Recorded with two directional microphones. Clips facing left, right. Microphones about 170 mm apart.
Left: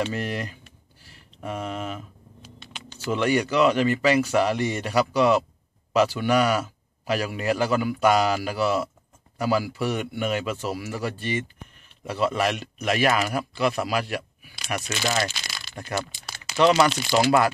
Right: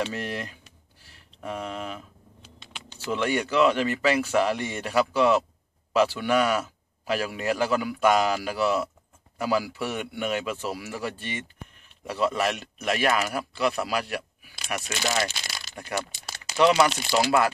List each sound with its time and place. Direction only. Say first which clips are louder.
0.1 s speech: left 3 dB; centre (ahead or behind)
2.6 s vehicle: left 1 dB; 20° right (ahead or behind)
3.1 s speech: left 3 dB; 5° left (ahead or behind)
16.5 s speech: left 1 dB; 10° right (ahead or behind)